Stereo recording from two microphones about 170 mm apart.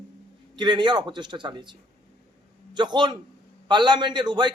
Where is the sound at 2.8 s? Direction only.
25° right (ahead or behind).